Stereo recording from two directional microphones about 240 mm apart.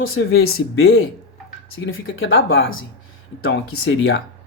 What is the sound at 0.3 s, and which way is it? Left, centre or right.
Speech, left.